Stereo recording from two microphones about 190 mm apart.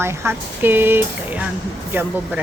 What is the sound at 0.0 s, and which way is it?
Speech, 10° right (ahead or behind).